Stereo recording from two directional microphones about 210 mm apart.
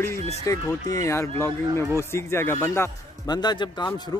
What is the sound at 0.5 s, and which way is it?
Speech, 15° left (ahead or behind).